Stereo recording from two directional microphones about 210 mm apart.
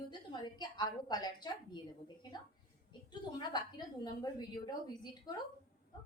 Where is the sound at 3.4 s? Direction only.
20° left (ahead or behind).